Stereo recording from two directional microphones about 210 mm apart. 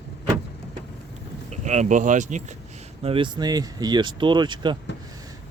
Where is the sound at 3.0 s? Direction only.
25° right (ahead or behind).